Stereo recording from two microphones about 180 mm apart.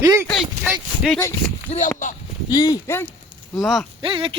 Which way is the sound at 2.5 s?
20° left (ahead or behind).